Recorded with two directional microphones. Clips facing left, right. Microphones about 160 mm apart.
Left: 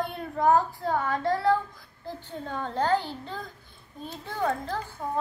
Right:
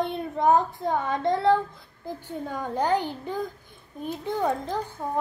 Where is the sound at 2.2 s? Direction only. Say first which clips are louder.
Right 2 dB; 10° right (ahead or behind).